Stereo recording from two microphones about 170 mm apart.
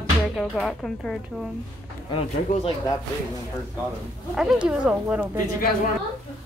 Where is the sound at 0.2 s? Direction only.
Centre (ahead or behind).